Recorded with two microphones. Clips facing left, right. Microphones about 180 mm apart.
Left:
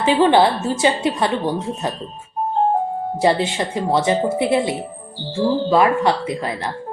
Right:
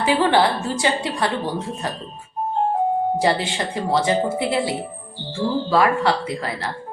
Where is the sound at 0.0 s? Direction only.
20° left (ahead or behind).